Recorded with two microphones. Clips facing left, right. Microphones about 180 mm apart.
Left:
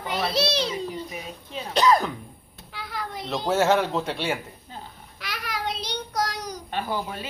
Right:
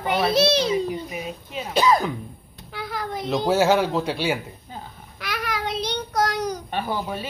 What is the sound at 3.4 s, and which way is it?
Speech, centre (ahead or behind).